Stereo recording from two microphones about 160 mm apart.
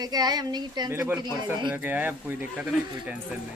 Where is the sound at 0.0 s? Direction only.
25° right (ahead or behind); by 2.7 s 10° right (ahead or behind).